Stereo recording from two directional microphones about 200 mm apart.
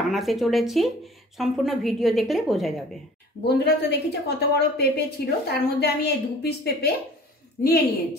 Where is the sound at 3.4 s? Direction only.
55° left (ahead or behind).